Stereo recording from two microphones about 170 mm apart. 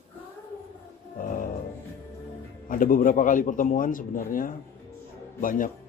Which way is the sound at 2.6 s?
55° left (ahead or behind).